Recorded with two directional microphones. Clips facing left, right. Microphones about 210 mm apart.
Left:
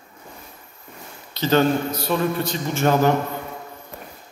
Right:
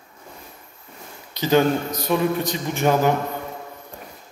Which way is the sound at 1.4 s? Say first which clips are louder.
Even; 15° right (ahead or behind).